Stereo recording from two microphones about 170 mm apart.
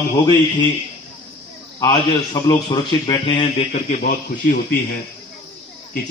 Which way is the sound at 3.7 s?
45° left (ahead or behind).